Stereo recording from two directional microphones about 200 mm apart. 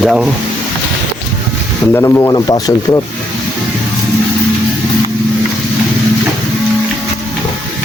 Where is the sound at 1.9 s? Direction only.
15° left (ahead or behind).